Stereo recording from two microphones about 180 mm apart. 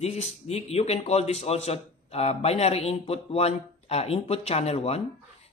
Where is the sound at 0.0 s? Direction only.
35° left (ahead or behind).